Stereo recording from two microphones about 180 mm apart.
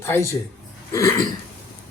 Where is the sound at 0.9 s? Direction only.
15° left (ahead or behind).